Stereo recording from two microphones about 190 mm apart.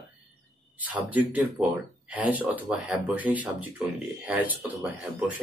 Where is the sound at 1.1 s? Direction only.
10° right (ahead or behind).